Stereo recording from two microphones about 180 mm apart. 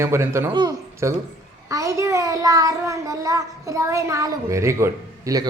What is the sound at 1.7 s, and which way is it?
Child singing, 15° right (ahead or behind).